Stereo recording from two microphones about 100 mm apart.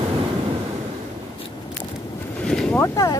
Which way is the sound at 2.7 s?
30° left (ahead or behind).